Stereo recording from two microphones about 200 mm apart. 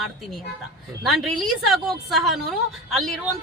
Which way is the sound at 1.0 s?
Centre (ahead or behind).